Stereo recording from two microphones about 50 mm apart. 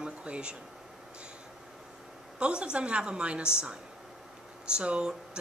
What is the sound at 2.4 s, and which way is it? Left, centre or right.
Speech, right.